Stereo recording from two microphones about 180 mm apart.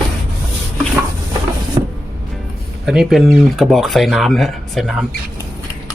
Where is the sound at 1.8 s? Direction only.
20° right (ahead or behind).